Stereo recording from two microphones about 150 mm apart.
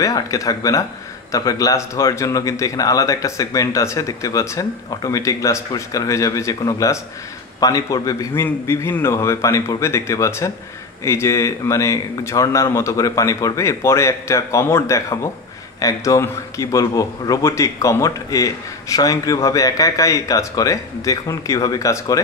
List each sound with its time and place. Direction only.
0.0 s a man's voice: 20° left (ahead or behind)